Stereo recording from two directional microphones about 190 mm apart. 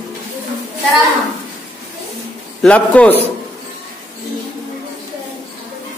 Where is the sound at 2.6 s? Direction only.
5° left (ahead or behind).